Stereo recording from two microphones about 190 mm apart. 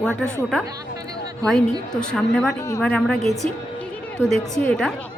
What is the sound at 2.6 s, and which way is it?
Speech, 15° left (ahead or behind).